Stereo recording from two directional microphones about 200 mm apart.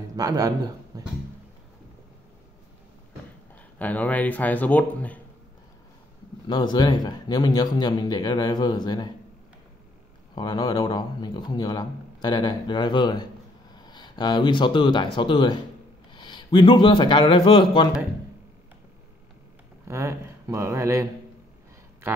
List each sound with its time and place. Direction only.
0.1 s speech: 20° right (ahead or behind)
3.7 s speech: 10° left (ahead or behind)
6.4 s a man's voice: 20° left (ahead or behind)
10.3 s a man's voice: 20° left (ahead or behind)
19.9 s a sound: 15° right (ahead or behind)